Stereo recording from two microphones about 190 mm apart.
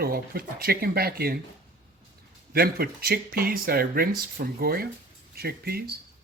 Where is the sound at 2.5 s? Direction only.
55° right (ahead or behind).